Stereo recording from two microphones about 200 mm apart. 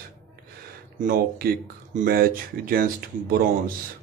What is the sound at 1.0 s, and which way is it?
Speech, 45° right (ahead or behind).